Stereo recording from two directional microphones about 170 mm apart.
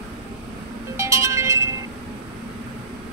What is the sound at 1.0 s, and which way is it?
Music, 15° right (ahead or behind).